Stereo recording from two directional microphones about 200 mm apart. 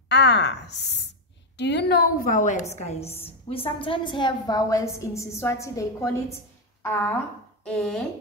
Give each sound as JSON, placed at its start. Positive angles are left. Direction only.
{"t": 0.1, "sound": "sigh", "side_deg": 60}
{"t": 1.6, "sound": "a woman's voice", "side_deg": 60}